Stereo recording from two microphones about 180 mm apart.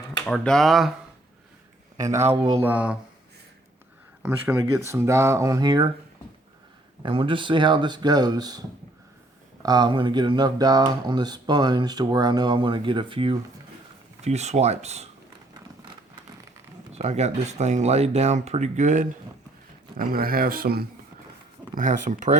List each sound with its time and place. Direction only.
0.3 s speech: 5° left (ahead or behind)
2.0 s speech: 15° right (ahead or behind)
4.2 s speech: 10° right (ahead or behind)
7.0 s speech: 30° right (ahead or behind)
9.6 s speech: 25° right (ahead or behind)
17.0 s speech: 40° right (ahead or behind)
20.0 s speech: 55° right (ahead or behind)
21.8 s speech: 45° right (ahead or behind)